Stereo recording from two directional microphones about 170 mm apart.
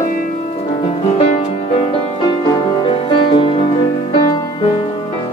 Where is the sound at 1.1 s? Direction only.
40° left (ahead or behind).